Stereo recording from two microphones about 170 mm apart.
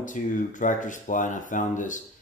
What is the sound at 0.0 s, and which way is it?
Speech, 50° left (ahead or behind).